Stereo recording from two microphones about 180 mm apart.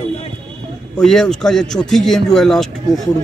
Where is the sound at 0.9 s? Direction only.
Centre (ahead or behind).